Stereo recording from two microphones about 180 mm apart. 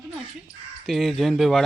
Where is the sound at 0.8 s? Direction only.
Centre (ahead or behind).